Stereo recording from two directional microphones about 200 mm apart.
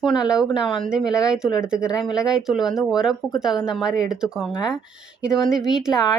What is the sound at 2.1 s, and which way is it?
Speech, 5° right (ahead or behind).